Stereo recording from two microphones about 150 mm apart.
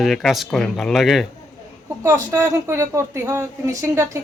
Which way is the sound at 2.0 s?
20° right (ahead or behind).